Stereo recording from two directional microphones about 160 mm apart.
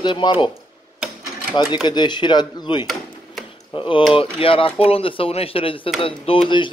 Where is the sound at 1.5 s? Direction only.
25° left (ahead or behind).